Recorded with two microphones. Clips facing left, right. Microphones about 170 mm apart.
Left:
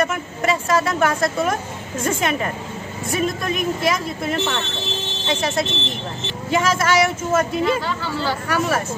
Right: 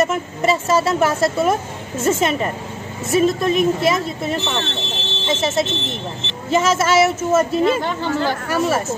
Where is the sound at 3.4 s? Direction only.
Centre (ahead or behind).